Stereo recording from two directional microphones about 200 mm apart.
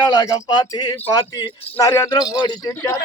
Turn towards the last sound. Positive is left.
turn(degrees=15)  # may be behind; listen again after turning